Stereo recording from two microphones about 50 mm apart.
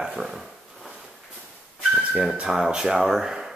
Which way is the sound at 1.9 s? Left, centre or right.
Centre.